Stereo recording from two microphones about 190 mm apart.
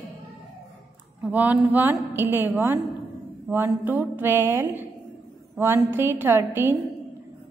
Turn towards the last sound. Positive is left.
turn(degrees=-10)  # may be behind; listen again after turning